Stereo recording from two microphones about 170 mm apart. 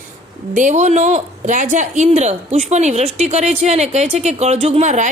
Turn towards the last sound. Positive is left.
turn(degrees=-45)  # may be behind; listen again after turning